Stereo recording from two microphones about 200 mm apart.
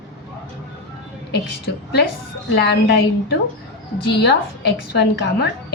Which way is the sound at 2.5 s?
55° left (ahead or behind).